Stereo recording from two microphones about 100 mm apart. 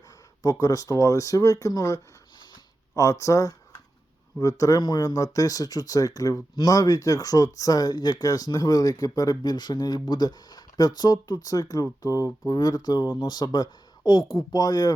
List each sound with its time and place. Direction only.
0.6 s speech: 35° left (ahead or behind)